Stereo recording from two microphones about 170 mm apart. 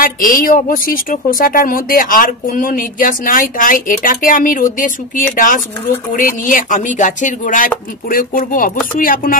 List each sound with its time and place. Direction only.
0.0 s a woman's voice: 55° left (ahead or behind)